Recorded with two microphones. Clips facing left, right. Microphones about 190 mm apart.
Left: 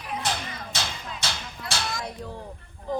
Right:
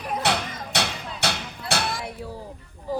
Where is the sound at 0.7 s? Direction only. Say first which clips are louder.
Right 7 dB; 65° right (ahead or behind).